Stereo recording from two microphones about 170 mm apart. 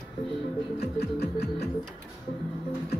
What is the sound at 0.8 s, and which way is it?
Music, 70° left (ahead or behind).